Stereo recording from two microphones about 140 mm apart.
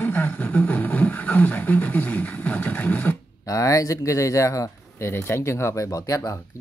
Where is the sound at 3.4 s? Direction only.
25° left (ahead or behind).